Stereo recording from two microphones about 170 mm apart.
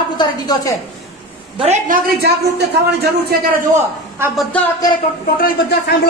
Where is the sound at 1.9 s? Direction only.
70° right (ahead or behind).